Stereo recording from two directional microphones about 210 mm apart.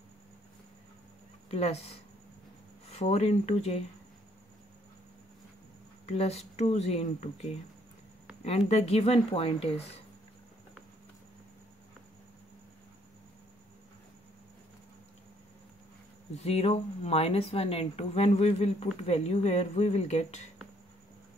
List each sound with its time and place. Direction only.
1.5 s speech: 30° left (ahead or behind)
6.0 s speech: 30° left (ahead or behind)
16.3 s speech: 30° left (ahead or behind)